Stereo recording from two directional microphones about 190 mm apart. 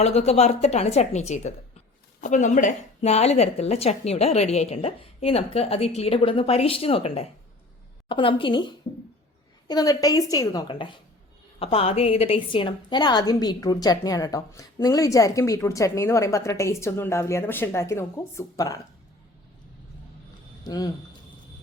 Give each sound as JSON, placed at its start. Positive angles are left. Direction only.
{"t": 0.0, "sound": "a woman's voice", "side_deg": 35}
{"t": 20.7, "sound": "a woman's voice", "side_deg": 20}